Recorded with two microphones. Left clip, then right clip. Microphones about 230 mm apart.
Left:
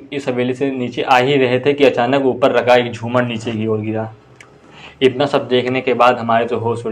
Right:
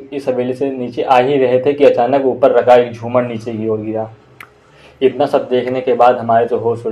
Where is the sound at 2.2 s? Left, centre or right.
Left.